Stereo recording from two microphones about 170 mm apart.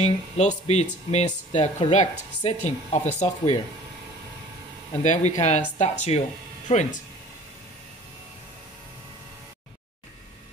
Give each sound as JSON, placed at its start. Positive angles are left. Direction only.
{"t": 0.0, "sound": "speech", "side_deg": 40}
{"t": 5.0, "sound": "speech", "side_deg": 45}